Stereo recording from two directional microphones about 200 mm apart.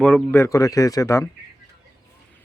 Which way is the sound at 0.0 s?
5° left (ahead or behind).